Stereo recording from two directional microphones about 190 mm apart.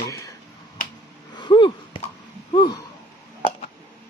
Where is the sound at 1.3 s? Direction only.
25° left (ahead or behind).